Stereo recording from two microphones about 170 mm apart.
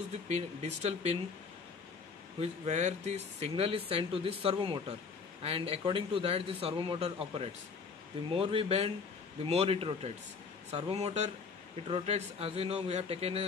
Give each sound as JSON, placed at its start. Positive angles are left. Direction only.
{"t": 0.3, "sound": "speech", "side_deg": -40}
{"t": 2.4, "sound": "speech", "side_deg": -40}